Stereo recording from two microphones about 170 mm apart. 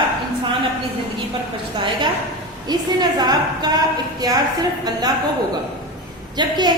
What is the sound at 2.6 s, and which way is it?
A woman's voice, 25° right (ahead or behind).